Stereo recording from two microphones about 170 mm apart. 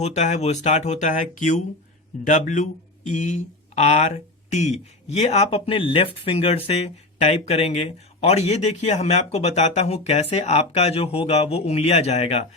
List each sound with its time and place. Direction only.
0.0 s speech: 45° left (ahead or behind)